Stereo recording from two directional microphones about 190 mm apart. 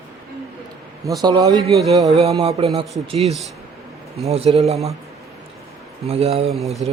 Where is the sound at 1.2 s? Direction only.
20° right (ahead or behind).